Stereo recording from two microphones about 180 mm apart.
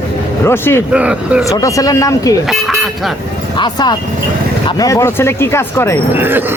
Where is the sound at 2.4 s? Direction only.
Centre (ahead or behind).